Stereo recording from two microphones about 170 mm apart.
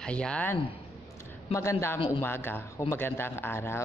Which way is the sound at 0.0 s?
5° left (ahead or behind).